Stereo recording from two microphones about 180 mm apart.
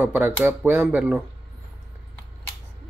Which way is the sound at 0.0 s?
10° right (ahead or behind).